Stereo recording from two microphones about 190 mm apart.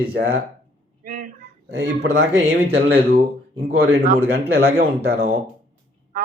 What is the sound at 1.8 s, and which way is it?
Speech, 75° right (ahead or behind).